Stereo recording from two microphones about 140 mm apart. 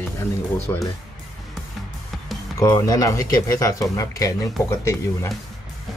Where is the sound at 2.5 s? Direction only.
25° left (ahead or behind).